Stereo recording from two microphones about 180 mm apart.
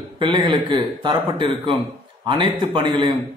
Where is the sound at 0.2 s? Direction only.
25° right (ahead or behind).